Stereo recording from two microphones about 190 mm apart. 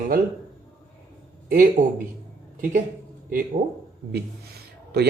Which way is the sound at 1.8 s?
45° right (ahead or behind).